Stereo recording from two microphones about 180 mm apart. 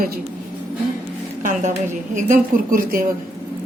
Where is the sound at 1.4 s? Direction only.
45° right (ahead or behind).